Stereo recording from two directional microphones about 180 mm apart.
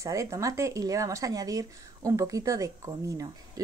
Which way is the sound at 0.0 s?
15° right (ahead or behind).